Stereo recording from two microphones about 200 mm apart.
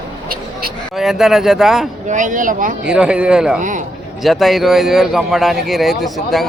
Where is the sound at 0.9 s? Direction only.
Centre (ahead or behind).